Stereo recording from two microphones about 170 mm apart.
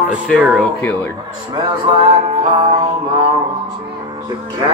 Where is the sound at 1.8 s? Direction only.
35° right (ahead or behind).